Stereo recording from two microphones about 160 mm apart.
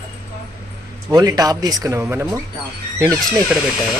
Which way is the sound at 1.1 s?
25° right (ahead or behind).